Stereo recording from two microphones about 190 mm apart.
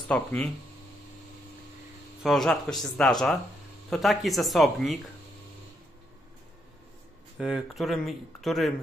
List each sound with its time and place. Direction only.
0.1 s speech: 5° left (ahead or behind)
2.2 s speech: centre (ahead or behind)
7.3 s speech: 5° right (ahead or behind)